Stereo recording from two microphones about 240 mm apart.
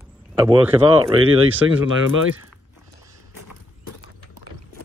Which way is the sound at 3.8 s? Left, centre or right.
Left.